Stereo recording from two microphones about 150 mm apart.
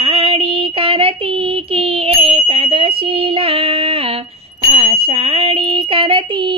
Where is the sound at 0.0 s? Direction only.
40° right (ahead or behind).